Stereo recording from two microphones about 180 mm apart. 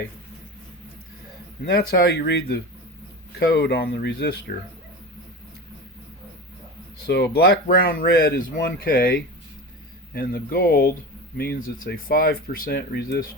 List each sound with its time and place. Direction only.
1.6 s speech: 60° left (ahead or behind)
7.1 s speech: 65° left (ahead or behind)
10.2 s speech: 55° left (ahead or behind)